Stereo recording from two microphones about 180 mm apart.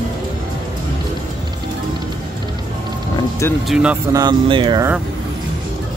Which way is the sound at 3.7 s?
5° right (ahead or behind).